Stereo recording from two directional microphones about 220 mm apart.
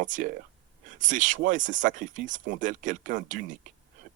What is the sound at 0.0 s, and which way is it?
Speech, 35° right (ahead or behind).